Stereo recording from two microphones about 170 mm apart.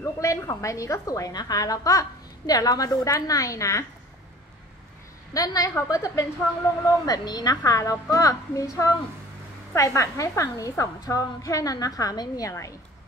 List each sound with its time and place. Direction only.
0.0 s a woman's voice: 20° left (ahead or behind)
5.3 s a woman's voice: 20° left (ahead or behind)